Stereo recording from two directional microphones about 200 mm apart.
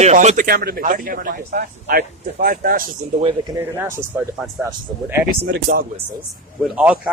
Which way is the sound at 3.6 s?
10° right (ahead or behind).